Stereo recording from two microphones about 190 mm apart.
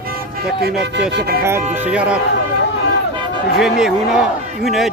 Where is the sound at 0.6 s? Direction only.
55° right (ahead or behind).